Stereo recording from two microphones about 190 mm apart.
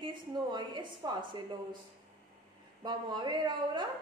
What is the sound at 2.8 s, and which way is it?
A woman's voice, 20° right (ahead or behind).